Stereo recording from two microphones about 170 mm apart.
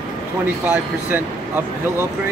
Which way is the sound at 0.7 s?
10° right (ahead or behind).